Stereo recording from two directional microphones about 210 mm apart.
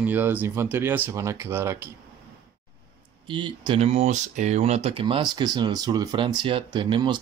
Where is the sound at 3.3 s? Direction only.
25° right (ahead or behind).